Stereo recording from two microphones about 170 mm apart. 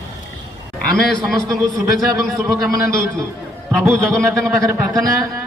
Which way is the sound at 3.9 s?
5° left (ahead or behind).